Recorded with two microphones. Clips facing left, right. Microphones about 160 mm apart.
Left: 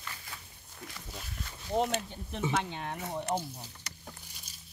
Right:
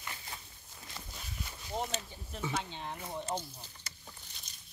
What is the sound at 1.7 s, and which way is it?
Speech, 65° left (ahead or behind).